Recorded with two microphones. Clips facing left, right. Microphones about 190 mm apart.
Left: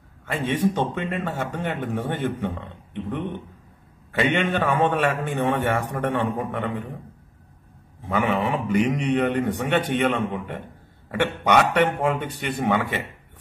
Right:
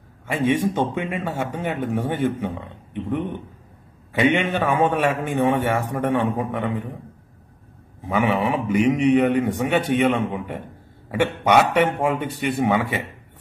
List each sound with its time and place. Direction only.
0.3 s a man's voice: 10° right (ahead or behind)
8.1 s a man's voice: 5° right (ahead or behind)